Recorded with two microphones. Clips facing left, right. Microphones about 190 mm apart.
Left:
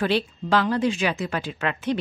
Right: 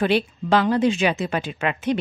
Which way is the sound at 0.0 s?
20° right (ahead or behind).